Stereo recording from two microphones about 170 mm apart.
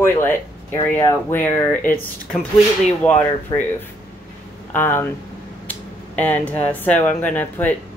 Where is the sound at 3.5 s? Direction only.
25° left (ahead or behind).